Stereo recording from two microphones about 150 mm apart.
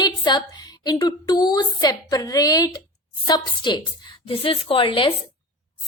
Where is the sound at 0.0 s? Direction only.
30° left (ahead or behind).